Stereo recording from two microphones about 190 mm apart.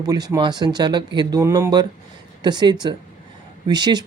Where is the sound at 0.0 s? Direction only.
20° right (ahead or behind).